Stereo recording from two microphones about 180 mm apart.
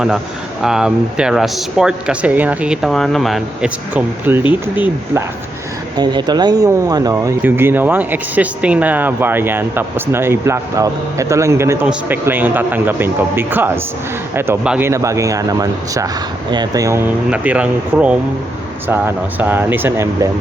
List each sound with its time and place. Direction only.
0.6 s speech: 5° right (ahead or behind); by 17.0 s 20° right (ahead or behind)
17.2 s speech: 5° right (ahead or behind)